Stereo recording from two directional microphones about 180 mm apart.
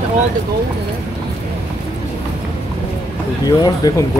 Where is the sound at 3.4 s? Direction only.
20° left (ahead or behind).